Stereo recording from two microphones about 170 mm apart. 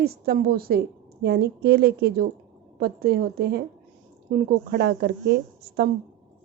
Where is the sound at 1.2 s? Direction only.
75° right (ahead or behind).